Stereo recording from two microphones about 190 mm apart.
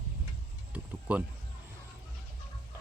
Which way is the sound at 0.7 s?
10° right (ahead or behind).